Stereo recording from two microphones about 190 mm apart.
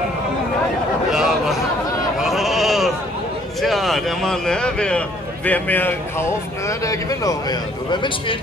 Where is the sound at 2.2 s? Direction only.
Centre (ahead or behind).